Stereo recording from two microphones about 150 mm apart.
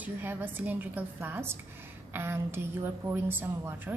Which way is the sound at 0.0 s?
15° right (ahead or behind).